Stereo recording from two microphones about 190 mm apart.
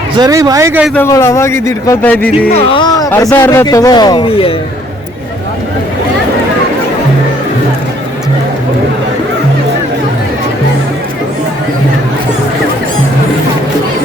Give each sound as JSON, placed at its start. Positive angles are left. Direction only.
{"t": 0.2, "sound": "speech", "side_deg": -20}
{"t": 0.9, "sound": "a man's voice", "side_deg": 15}
{"t": 2.5, "sound": "a man's voice", "side_deg": 30}